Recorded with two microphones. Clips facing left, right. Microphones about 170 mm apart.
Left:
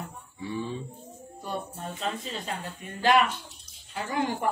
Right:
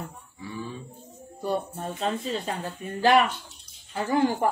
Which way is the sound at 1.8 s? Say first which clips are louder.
Right 4 dB; 35° right (ahead or behind).